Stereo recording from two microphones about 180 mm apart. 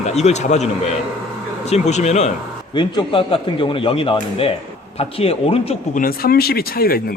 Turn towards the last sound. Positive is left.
turn(degrees=55)  # may be behind; listen again after turning